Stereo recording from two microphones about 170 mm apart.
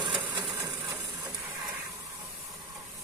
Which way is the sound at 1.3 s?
10° right (ahead or behind).